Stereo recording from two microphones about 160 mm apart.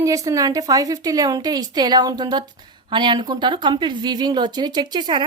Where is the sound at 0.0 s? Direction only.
20° right (ahead or behind).